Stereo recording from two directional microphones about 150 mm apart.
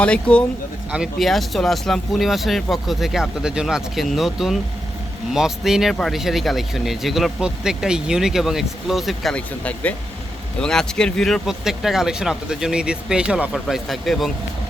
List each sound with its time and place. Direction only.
0.0 s speech: 10° left (ahead or behind)
0.9 s speech: 5° right (ahead or behind)